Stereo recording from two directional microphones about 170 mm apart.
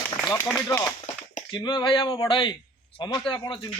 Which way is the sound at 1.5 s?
25° left (ahead or behind).